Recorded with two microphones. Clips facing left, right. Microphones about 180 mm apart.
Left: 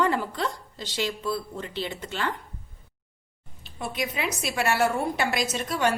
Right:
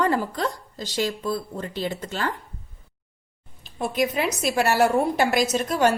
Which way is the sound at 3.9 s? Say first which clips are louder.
Right 6 dB; 45° right (ahead or behind).